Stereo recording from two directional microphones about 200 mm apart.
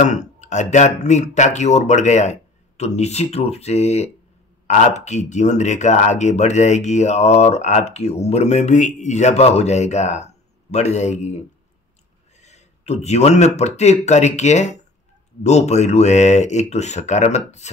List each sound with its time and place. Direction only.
0.0 s speech: 35° left (ahead or behind)
12.4 s a sound: 35° left (ahead or behind)
13.6 s speech: 35° left (ahead or behind)